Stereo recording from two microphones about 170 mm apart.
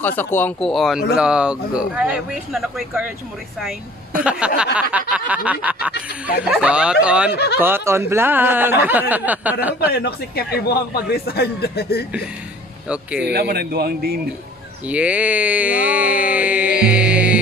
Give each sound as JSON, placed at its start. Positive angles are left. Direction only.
{"t": 0.0, "sound": "speech", "side_deg": 10}
{"t": 9.9, "sound": "a man's voice", "side_deg": 70}
{"t": 12.8, "sound": "speech", "side_deg": -5}
{"t": 13.3, "sound": "a man's voice", "side_deg": -70}
{"t": 14.9, "sound": "speech", "side_deg": -5}